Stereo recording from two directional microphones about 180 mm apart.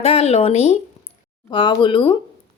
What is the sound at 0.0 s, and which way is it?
Speech, 35° left (ahead or behind).